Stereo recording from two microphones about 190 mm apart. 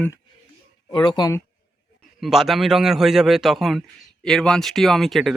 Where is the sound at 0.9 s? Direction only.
25° left (ahead or behind).